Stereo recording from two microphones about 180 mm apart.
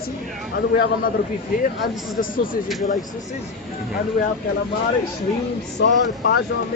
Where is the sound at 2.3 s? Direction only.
50° left (ahead or behind).